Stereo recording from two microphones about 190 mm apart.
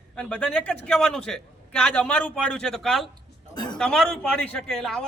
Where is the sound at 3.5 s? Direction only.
25° left (ahead or behind).